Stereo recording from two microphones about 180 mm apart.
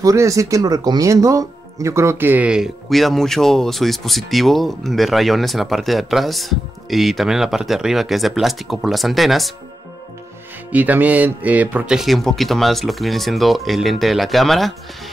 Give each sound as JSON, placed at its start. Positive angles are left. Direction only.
{"t": 0.0, "sound": "speech", "side_deg": -20}
{"t": 10.7, "sound": "speech", "side_deg": -10}